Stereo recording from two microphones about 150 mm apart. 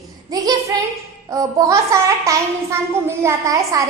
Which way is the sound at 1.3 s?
20° right (ahead or behind).